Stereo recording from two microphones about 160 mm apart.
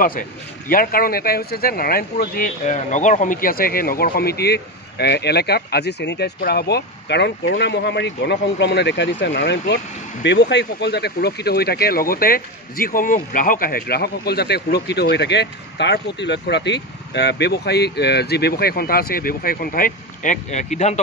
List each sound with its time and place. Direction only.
0.7 s speech: 65° left (ahead or behind); by 21.0 s 45° left (ahead or behind)